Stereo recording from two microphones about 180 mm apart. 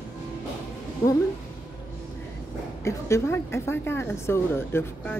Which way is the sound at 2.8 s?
15° left (ahead or behind).